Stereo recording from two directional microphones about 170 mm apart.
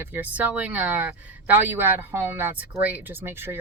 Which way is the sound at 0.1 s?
10° right (ahead or behind).